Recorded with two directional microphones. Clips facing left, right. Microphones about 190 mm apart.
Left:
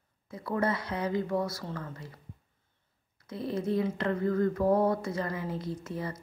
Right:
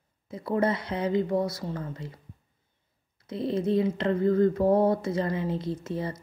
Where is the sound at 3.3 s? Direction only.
25° right (ahead or behind).